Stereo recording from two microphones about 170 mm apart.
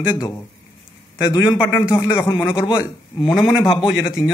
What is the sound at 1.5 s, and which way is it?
Speech, 5° right (ahead or behind).